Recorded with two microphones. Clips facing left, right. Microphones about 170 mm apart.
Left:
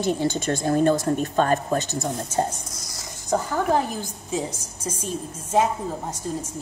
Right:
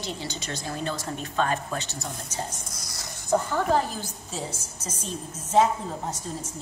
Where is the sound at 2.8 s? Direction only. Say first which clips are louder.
Left 1 dB; 65° right (ahead or behind).